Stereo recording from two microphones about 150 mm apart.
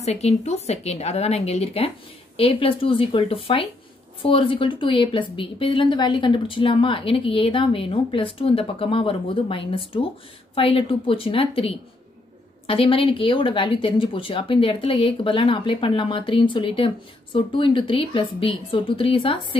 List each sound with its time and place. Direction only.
0.0 s speech: 45° left (ahead or behind)